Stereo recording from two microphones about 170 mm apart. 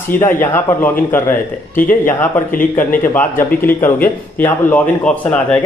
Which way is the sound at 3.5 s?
10° left (ahead or behind).